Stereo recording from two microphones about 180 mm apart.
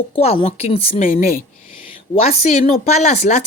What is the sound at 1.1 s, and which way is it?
Speech, 55° left (ahead or behind).